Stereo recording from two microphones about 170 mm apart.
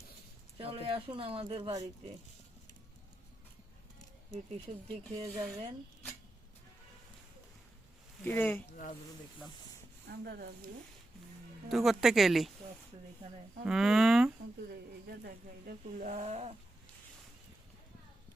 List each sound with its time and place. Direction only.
0.5 s speech: 30° right (ahead or behind)
4.5 s speech: 35° right (ahead or behind)
8.2 s speech: 15° left (ahead or behind)
8.7 s speech: 50° left (ahead or behind)
10.1 s speech: 65° right (ahead or behind)
11.7 s a woman's voice: centre (ahead or behind)
13.7 s speech: centre (ahead or behind)
14.7 s speech: 60° right (ahead or behind); by 16.6 s 40° right (ahead or behind)